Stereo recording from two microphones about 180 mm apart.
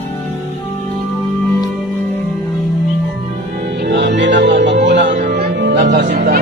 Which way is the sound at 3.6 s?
70° right (ahead or behind).